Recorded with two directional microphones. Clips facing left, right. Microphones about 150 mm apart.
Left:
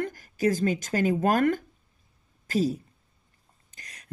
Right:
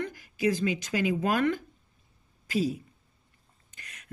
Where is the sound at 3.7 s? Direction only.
35° left (ahead or behind).